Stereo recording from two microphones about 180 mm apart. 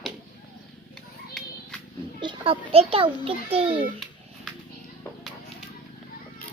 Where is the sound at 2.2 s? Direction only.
30° right (ahead or behind).